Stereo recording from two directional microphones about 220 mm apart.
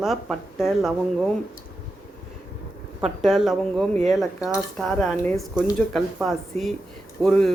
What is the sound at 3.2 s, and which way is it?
A woman's voice, centre (ahead or behind).